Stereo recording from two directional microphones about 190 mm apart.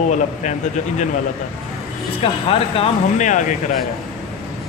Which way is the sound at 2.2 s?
30° left (ahead or behind).